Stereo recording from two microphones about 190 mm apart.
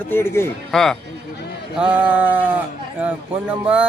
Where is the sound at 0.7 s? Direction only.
Centre (ahead or behind).